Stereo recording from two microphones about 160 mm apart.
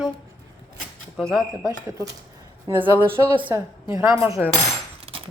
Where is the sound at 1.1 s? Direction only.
Centre (ahead or behind).